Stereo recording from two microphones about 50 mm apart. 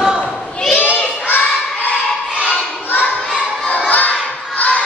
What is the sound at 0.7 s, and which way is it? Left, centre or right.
Children playing, left.